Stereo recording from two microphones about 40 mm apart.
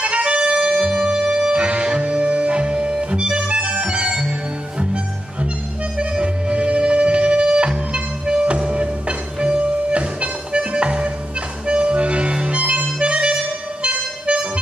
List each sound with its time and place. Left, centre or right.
0.0 s music: right